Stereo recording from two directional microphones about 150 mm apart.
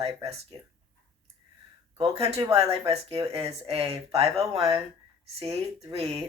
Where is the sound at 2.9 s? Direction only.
40° right (ahead or behind).